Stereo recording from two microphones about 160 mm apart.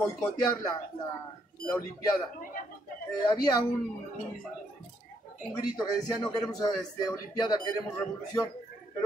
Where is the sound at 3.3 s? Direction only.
25° left (ahead or behind).